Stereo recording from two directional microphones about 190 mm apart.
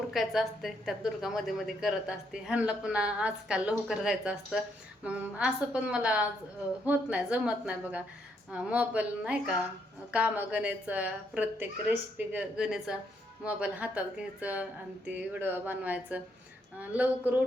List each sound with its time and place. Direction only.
0.1 s a woman's voice: centre (ahead or behind)